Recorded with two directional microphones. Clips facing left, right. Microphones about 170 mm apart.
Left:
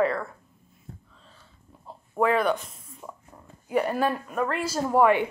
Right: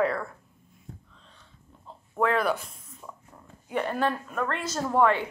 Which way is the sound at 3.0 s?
20° left (ahead or behind).